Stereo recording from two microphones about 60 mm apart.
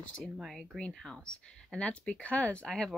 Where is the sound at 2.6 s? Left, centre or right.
Centre.